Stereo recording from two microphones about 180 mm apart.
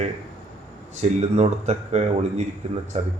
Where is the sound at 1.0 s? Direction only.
35° right (ahead or behind).